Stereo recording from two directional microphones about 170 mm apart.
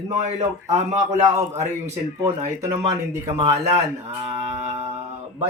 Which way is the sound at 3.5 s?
35° right (ahead or behind).